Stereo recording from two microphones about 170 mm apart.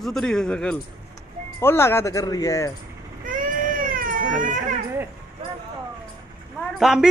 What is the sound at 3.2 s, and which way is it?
Baby cry, 50° right (ahead or behind).